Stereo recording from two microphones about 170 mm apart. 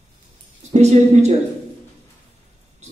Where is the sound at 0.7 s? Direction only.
40° right (ahead or behind).